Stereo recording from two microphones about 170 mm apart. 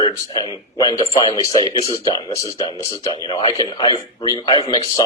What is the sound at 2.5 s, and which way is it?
Speech, 35° left (ahead or behind).